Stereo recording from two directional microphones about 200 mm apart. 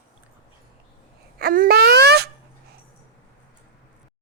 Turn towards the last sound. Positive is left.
turn(degrees=-55)  # may be behind; listen again after turning